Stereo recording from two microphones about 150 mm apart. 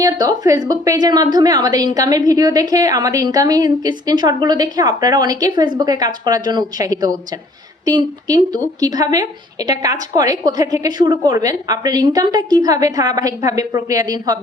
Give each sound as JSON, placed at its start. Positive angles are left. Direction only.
{"t": 0.0, "sound": "a woman's voice", "side_deg": -25}